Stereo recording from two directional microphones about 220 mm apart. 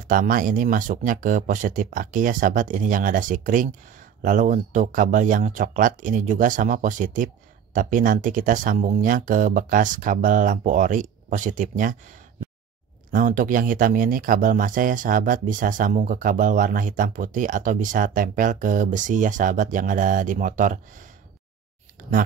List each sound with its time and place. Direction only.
0.1 s speech: 40° right (ahead or behind)
13.1 s speech: 40° right (ahead or behind)